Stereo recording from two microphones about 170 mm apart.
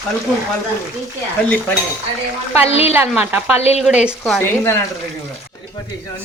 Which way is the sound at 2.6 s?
35° left (ahead or behind).